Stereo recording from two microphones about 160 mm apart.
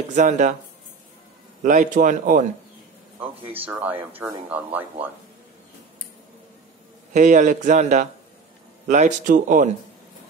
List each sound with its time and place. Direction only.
0.1 s speech: 50° right (ahead or behind)
1.6 s speech: 50° right (ahead or behind)
3.6 s speech: 10° right (ahead or behind)
7.2 s speech: 50° right (ahead or behind)